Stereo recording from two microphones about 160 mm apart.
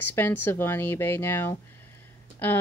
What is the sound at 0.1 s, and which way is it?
Speech, 10° left (ahead or behind).